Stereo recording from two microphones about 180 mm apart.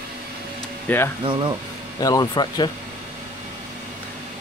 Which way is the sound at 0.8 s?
10° left (ahead or behind).